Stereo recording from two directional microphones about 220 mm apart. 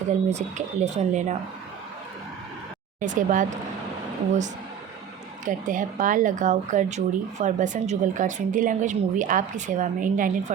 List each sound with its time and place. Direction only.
0.3 s speech: 30° right (ahead or behind)
3.0 s speech: 35° right (ahead or behind)
5.5 s speech: 35° right (ahead or behind)